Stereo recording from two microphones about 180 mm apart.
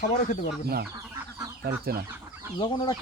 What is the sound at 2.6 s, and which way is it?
Speech, 25° left (ahead or behind).